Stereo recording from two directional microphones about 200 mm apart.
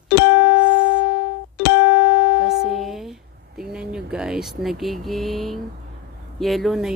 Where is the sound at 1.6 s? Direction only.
65° left (ahead or behind).